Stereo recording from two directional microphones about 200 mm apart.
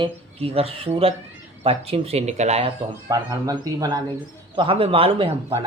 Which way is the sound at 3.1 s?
20° right (ahead or behind).